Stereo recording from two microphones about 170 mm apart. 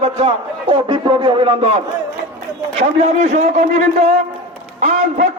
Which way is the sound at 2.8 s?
40° right (ahead or behind).